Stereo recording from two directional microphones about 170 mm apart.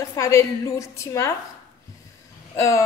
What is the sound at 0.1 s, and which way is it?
A woman's voice, 20° left (ahead or behind).